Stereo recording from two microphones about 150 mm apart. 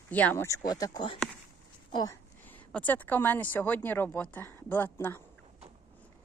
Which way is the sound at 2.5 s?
10° left (ahead or behind).